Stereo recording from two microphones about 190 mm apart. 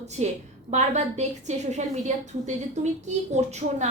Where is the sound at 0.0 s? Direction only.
35° right (ahead or behind).